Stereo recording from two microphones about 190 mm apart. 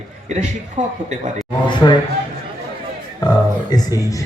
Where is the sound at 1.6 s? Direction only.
25° left (ahead or behind).